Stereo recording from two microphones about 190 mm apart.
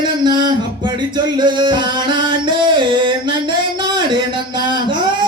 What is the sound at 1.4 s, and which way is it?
Music, 25° right (ahead or behind).